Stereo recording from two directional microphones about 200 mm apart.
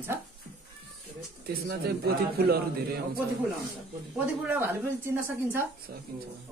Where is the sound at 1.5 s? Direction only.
50° right (ahead or behind).